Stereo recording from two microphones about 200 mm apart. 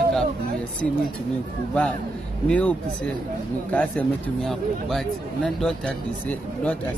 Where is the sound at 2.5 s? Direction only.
5° left (ahead or behind).